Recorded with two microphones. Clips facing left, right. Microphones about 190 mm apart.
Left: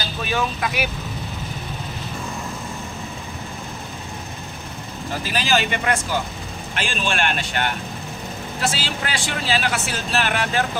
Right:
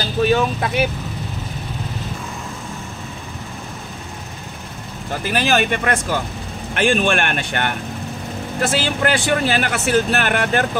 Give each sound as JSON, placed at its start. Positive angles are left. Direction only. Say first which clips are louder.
{"t": 0.3, "sound": "speech", "louder": "right 6 dB", "side_deg": -30}
{"t": 5.2, "sound": "speech", "louder": "right 4 dB", "side_deg": -55}